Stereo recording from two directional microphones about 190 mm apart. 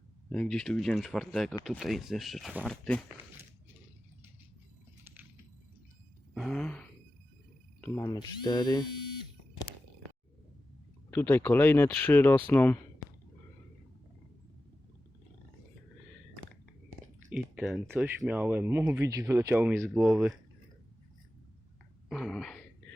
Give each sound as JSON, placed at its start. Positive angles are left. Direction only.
{"t": 0.3, "sound": "speech", "side_deg": 5}
{"t": 6.3, "sound": "a sound", "side_deg": 0}
{"t": 7.8, "sound": "speech", "side_deg": 15}
{"t": 11.1, "sound": "speech", "side_deg": 10}
{"t": 17.3, "sound": "speech", "side_deg": -5}
{"t": 22.1, "sound": "throat clearing", "side_deg": 0}